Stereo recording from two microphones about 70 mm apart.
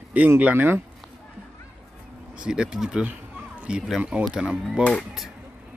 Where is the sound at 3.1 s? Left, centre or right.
Right.